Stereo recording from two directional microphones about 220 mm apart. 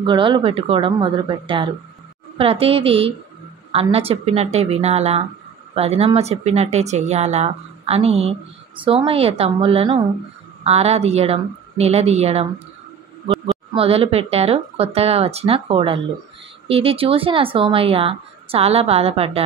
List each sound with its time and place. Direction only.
0.0 s speech: 20° right (ahead or behind)
13.7 s speech: 25° right (ahead or behind)